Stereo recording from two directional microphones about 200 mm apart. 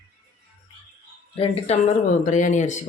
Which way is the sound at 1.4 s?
30° left (ahead or behind).